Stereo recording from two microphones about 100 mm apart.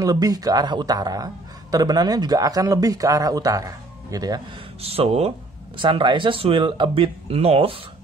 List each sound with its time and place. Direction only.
0.0 s speech: 40° right (ahead or behind)
4.8 s speech: 80° right
5.8 s speech: 55° right (ahead or behind); by 7.7 s 85° right